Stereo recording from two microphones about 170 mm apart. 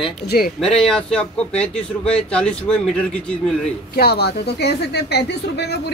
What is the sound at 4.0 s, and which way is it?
Speech, 70° left (ahead or behind).